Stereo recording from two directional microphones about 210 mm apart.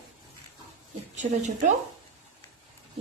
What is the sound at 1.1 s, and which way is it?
Speech, 35° right (ahead or behind).